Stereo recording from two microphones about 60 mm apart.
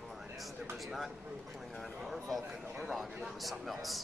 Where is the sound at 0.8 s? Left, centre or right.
Centre.